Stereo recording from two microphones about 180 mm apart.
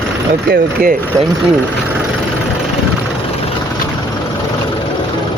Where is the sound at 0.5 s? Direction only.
55° right (ahead or behind).